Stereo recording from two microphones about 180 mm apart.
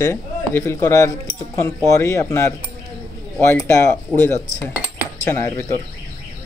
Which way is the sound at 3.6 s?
15° left (ahead or behind).